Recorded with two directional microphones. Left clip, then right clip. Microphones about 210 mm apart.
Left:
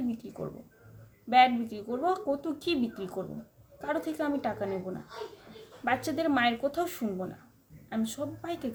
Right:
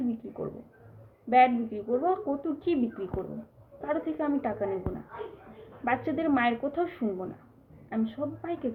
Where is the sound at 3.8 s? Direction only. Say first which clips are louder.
Right 1 dB; 20° left (ahead or behind).